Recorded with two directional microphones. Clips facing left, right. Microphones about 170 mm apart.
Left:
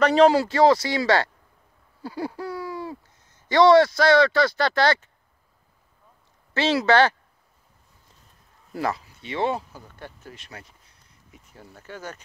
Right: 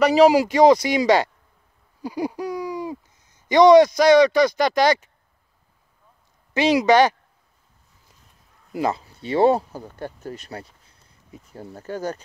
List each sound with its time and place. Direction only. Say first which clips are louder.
0.0 s speech: right 2 dB; 10° right (ahead or behind)
6.5 s speech: right 4 dB; 15° right (ahead or behind)
8.7 s speech: right 4 dB; 20° right (ahead or behind)
9.2 s speech: right 9 dB; 35° right (ahead or behind)